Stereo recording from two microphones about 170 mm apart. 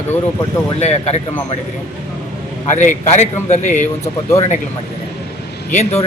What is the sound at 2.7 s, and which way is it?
Speech, 45° left (ahead or behind).